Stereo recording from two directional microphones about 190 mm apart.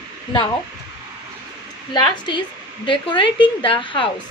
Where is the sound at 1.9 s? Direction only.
20° left (ahead or behind).